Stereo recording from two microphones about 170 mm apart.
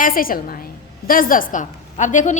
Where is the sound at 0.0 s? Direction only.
55° left (ahead or behind).